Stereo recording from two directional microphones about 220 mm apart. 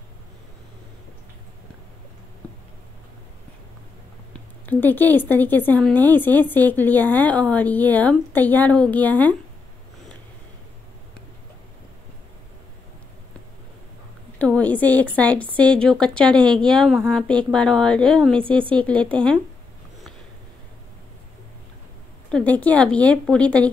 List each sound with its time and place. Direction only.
4.3 s a woman's voice: 10° left (ahead or behind)
14.4 s a sound: 5° left (ahead or behind)
15.1 s a woman's voice: 5° left (ahead or behind)
18.4 s a woman's voice: 25° right (ahead or behind)
18.8 s a woman's voice: 5° left (ahead or behind)
22.3 s a woman's voice: 5° left (ahead or behind)